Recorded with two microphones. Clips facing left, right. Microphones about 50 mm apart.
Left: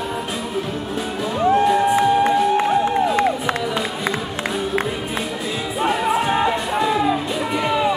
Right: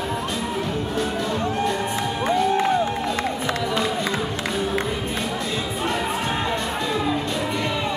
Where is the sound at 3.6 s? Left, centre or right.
Centre.